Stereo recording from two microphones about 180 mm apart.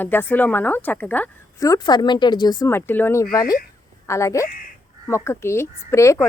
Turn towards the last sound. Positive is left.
turn(degrees=15)  # may be behind; listen again after turning